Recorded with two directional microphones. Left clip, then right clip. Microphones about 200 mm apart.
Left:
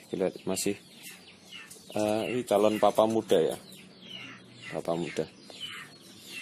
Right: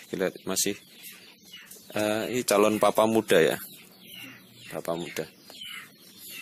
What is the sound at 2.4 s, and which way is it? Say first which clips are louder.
Speech: right 2 dB; 20° right (ahead or behind).